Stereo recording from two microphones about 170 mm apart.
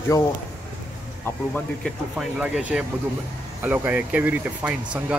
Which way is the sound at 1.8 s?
5° right (ahead or behind).